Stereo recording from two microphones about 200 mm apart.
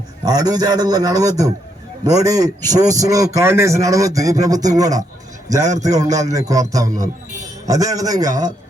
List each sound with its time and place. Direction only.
0.3 s a man's voice: 20° right (ahead or behind)